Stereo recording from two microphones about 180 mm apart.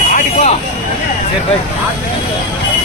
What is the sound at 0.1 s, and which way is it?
Vehicle, 45° left (ahead or behind).